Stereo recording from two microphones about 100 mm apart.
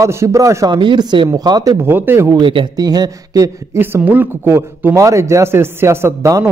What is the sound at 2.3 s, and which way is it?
Speech, 55° right (ahead or behind).